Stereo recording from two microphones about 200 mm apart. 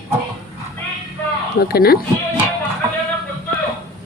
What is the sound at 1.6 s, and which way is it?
Speech, 50° left (ahead or behind).